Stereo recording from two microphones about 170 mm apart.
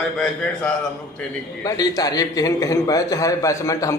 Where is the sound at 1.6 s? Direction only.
20° left (ahead or behind).